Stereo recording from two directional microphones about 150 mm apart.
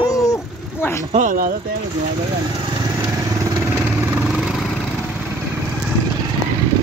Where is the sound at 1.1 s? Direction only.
65° right (ahead or behind).